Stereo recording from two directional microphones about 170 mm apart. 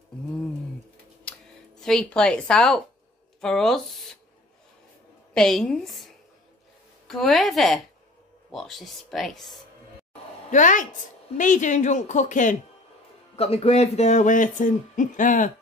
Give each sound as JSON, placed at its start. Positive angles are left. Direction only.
{"t": 1.8, "sound": "speech", "side_deg": 5}
{"t": 5.3, "sound": "speech", "side_deg": 5}
{"t": 10.5, "sound": "speech", "side_deg": 50}
{"t": 13.4, "sound": "speech", "side_deg": 35}